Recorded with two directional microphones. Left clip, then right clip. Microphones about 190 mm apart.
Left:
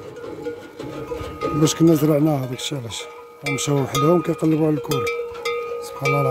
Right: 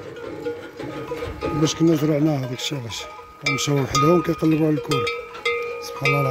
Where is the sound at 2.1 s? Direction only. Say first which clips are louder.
Left 2 dB; 10° left (ahead or behind).